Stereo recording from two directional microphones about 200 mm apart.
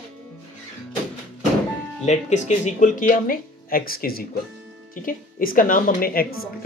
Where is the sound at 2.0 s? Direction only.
35° left (ahead or behind).